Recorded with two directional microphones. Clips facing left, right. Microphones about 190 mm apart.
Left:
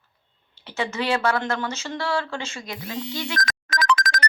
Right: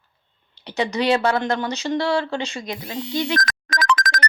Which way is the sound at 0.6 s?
20° right (ahead or behind).